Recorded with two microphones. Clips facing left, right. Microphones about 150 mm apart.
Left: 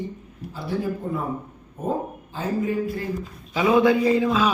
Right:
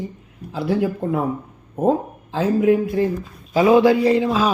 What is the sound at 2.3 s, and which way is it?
Speech, 90° right.